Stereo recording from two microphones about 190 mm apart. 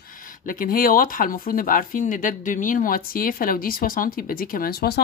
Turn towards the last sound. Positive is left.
turn(degrees=55)  # may be behind; listen again after turning